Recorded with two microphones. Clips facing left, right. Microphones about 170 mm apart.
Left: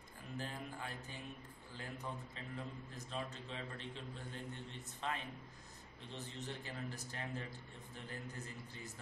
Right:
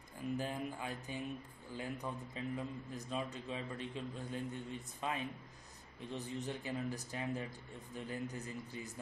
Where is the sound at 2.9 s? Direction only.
15° right (ahead or behind).